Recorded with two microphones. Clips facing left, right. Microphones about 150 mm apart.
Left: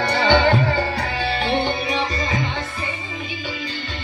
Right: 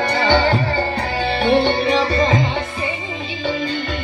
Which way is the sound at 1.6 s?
90° right.